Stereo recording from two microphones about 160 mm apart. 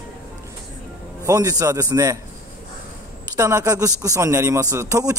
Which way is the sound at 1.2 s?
20° right (ahead or behind).